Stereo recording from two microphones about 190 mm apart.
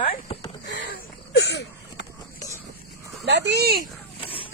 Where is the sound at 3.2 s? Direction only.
65° right (ahead or behind).